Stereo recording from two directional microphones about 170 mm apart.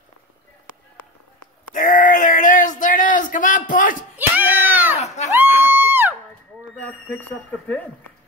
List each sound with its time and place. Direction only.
1.7 s a sound: 55° left (ahead or behind)
4.4 s cat: 10° right (ahead or behind)
5.0 s crowd: 40° left (ahead or behind)
5.6 s music: 10° right (ahead or behind)
6.7 s speech: 10° left (ahead or behind)